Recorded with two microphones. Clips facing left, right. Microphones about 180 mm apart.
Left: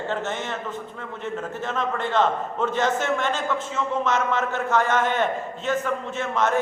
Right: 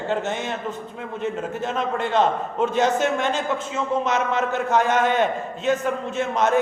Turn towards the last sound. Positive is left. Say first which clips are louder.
# right 3 dB
turn(degrees=-15)  # may be behind; listen again after turning